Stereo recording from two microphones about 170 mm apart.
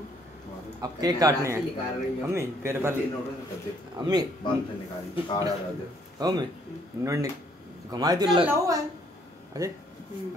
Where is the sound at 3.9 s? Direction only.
25° right (ahead or behind).